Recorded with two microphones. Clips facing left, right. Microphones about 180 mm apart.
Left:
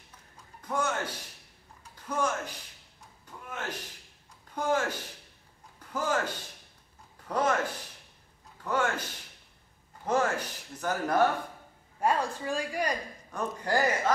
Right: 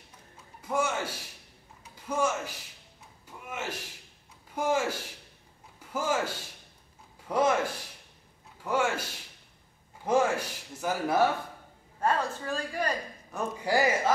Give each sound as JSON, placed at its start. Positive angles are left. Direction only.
{"t": 0.6, "sound": "a man's voice", "side_deg": -10}
{"t": 3.3, "sound": "a sound", "side_deg": -10}
{"t": 4.5, "sound": "speech", "side_deg": -10}
{"t": 12.0, "sound": "a woman's voice", "side_deg": 15}
{"t": 13.3, "sound": "speech", "side_deg": -10}